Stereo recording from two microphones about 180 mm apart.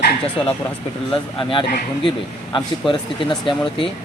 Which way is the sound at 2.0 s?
25° left (ahead or behind).